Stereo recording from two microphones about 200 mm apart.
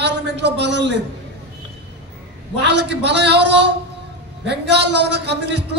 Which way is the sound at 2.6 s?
60° right (ahead or behind).